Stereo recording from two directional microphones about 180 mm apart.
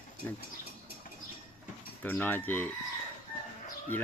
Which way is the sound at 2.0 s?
10° left (ahead or behind).